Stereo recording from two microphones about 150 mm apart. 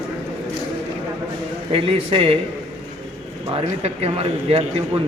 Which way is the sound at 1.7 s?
40° right (ahead or behind).